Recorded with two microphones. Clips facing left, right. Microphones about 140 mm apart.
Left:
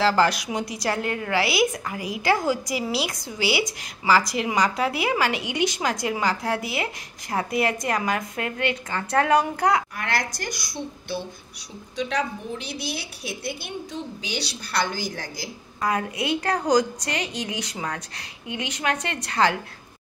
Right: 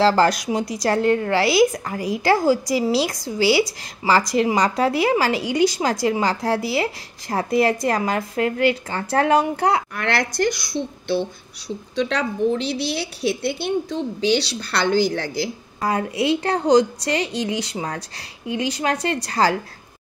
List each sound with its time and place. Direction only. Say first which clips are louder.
0.0 s a woman's voice: right 4 dB; 40° right (ahead or behind)
9.9 s a woman's voice: right 6 dB; 65° right (ahead or behind)
11.9 s a woman's voice: right 3 dB; 70° right (ahead or behind)
15.8 s a woman's voice: right 4 dB; 30° right (ahead or behind)